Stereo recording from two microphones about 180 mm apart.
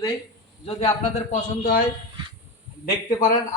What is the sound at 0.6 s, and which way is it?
A man's voice, 35° left (ahead or behind).